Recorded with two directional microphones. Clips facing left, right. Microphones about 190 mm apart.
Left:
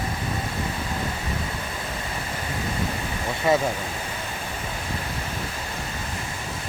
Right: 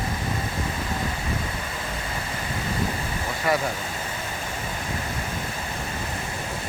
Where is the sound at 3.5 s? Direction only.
20° left (ahead or behind).